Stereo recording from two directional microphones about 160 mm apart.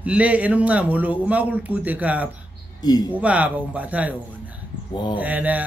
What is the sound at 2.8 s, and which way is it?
Speech, 25° left (ahead or behind).